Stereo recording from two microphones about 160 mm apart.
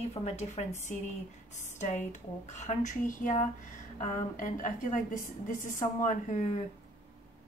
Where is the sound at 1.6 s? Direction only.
50° left (ahead or behind).